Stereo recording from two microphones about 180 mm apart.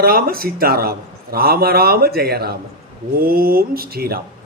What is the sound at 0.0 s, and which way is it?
A man's voice, 55° right (ahead or behind).